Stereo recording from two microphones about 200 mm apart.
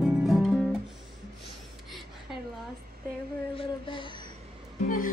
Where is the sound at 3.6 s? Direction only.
25° left (ahead or behind).